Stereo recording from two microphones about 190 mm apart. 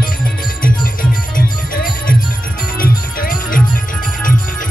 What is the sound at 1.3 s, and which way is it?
Music, 45° left (ahead or behind).